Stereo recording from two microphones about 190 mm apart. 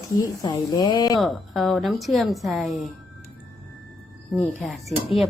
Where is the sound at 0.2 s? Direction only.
20° left (ahead or behind).